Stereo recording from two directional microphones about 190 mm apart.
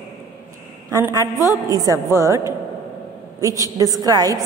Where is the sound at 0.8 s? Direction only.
15° right (ahead or behind).